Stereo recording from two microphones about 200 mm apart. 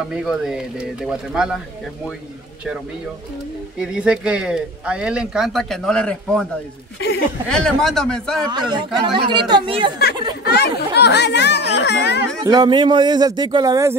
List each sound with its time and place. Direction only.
0.1 s speech: centre (ahead or behind)
3.8 s speech: 5° right (ahead or behind)
7.4 s speech: 5° left (ahead or behind)
8.5 s speech: 20° right (ahead or behind)
10.4 s speech: 55° left (ahead or behind)
12.4 s speech: 20° right (ahead or behind)